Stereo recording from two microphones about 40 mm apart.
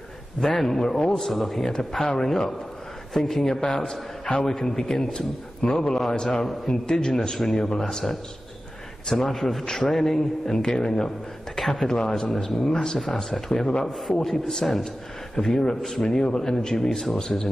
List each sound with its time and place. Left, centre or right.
0.4 s a man's voice: centre
5.6 s a man's voice: left
9.0 s a man's voice: centre
11.5 s a sound: centre
11.8 s a man's voice: centre
12.2 s a man's voice: centre